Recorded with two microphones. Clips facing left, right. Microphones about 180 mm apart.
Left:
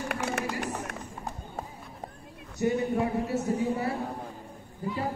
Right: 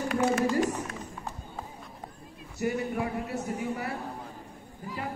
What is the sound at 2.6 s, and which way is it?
Speech, 25° left (ahead or behind).